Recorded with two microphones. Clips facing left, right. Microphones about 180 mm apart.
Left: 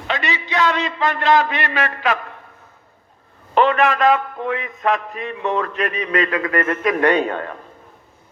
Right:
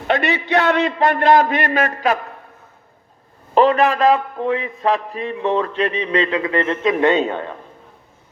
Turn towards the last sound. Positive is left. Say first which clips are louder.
# right 1 dB
turn(degrees=-15)  # may be behind; listen again after turning